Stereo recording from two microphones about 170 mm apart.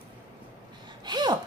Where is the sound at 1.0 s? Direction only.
25° right (ahead or behind).